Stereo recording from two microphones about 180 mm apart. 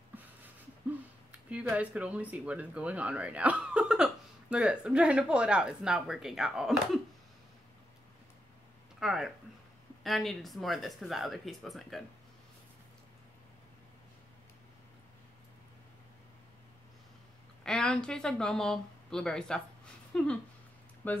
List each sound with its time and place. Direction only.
1.5 s speech: 5° right (ahead or behind)
9.0 s speech: centre (ahead or behind)
17.6 s speech: 5° left (ahead or behind)